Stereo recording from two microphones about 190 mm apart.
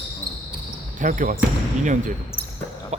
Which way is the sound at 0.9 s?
45° right (ahead or behind).